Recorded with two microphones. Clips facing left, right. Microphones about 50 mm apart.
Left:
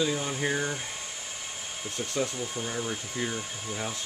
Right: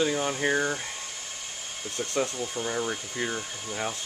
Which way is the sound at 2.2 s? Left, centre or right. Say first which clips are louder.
Right 1 dB; centre.